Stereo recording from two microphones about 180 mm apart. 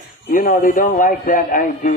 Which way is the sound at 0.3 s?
50° left (ahead or behind).